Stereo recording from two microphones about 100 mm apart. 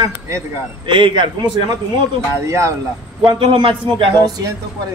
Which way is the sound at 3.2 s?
55° right (ahead or behind).